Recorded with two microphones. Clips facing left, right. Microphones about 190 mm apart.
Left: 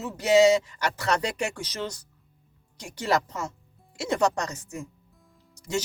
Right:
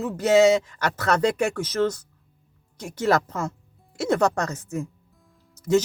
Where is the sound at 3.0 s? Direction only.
50° right (ahead or behind).